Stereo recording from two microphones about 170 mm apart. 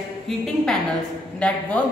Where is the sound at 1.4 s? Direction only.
5° left (ahead or behind).